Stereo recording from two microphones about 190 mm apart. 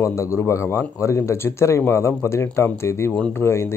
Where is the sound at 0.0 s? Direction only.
15° left (ahead or behind).